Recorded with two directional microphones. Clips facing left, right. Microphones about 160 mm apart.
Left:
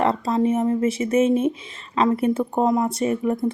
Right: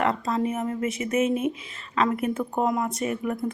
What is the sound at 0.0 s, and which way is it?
Speech, 30° left (ahead or behind).